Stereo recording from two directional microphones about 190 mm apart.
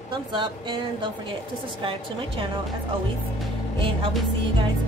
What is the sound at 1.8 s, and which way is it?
Speech, 25° right (ahead or behind).